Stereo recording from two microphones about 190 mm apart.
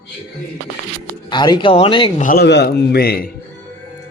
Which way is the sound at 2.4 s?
60° left (ahead or behind).